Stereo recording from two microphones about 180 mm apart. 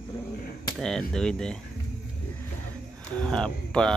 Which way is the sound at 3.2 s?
5° left (ahead or behind).